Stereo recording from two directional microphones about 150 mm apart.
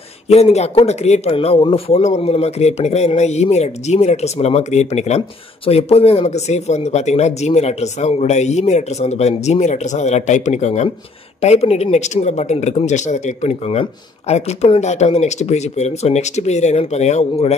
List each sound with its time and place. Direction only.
0.3 s speech: 45° left (ahead or behind)